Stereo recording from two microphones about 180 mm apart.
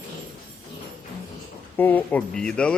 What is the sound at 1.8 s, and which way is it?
Speech, 10° left (ahead or behind).